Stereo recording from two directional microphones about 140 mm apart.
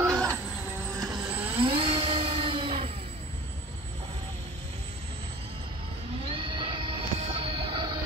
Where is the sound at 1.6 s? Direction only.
35° right (ahead or behind).